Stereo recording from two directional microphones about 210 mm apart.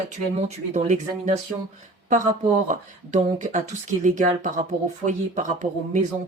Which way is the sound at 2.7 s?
35° right (ahead or behind).